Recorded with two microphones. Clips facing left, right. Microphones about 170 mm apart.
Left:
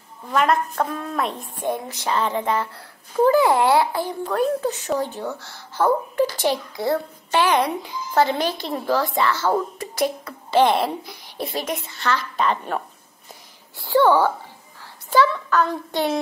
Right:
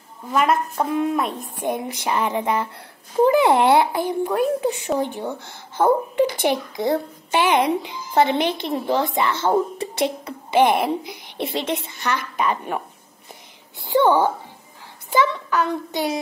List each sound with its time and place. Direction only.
0.3 s a woman's voice: centre (ahead or behind)
0.7 s a child's voice: 15° right (ahead or behind)
1.1 s a woman's voice: centre (ahead or behind)
1.6 s a child's voice: 15° right (ahead or behind)
15.1 s child singing: 15° right (ahead or behind)